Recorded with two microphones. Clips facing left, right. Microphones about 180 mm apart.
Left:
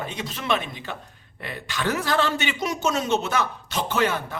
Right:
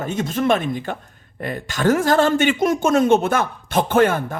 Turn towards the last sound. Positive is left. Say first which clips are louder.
# right 7 dB
turn(degrees=-50)  # may be behind; listen again after turning